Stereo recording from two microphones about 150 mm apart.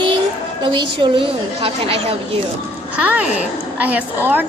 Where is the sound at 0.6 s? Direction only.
35° right (ahead or behind).